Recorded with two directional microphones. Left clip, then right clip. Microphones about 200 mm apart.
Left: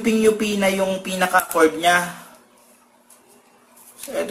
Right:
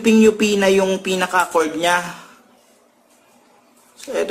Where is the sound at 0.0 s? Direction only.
55° right (ahead or behind).